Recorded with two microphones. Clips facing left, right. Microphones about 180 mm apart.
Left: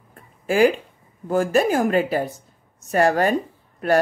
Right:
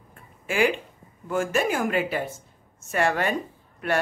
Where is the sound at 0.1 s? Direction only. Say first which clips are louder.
Left 7 dB; 35° left (ahead or behind).